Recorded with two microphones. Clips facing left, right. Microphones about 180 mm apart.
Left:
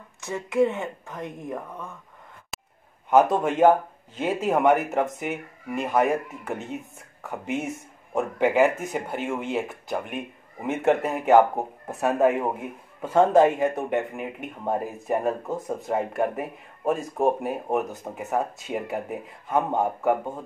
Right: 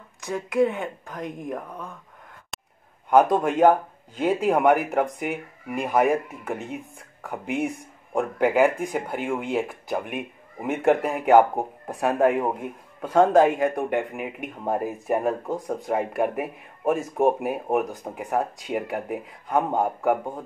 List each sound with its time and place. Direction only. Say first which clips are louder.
0.2 s speech: even; 5° left (ahead or behind)
1.7 s speech: right 1 dB; 15° right (ahead or behind)
2.5 s a sound: left 1 dB; centre (ahead or behind)
3.1 s a man's voice: right 1 dB; 5° left (ahead or behind)